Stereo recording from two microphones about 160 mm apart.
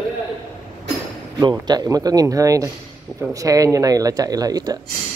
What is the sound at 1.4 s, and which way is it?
Speech, 25° right (ahead or behind).